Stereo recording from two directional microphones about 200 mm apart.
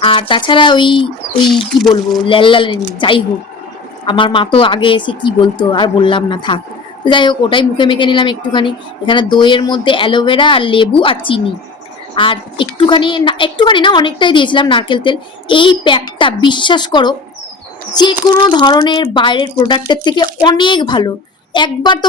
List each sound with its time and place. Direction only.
0.0 s a woman's voice: 25° left (ahead or behind)
1.5 s speech: centre (ahead or behind)
2.2 s a woman's voice: 25° left (ahead or behind)